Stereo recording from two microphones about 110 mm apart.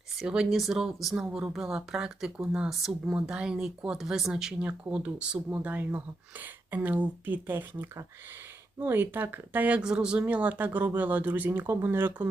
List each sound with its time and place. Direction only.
0.2 s speech: 5° right (ahead or behind)